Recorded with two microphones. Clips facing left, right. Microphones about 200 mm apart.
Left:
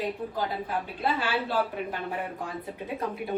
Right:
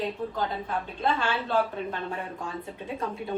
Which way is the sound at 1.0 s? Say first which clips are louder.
Right 1 dB; 5° left (ahead or behind).